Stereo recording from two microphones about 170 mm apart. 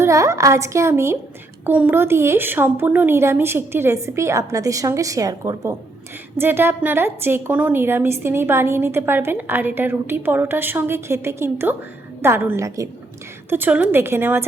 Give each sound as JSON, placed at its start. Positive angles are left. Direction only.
{"t": 0.0, "sound": "a woman's voice", "side_deg": -20}